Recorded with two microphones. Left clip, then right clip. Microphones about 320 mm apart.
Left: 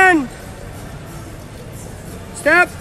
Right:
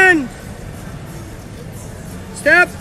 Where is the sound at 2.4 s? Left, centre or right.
Left.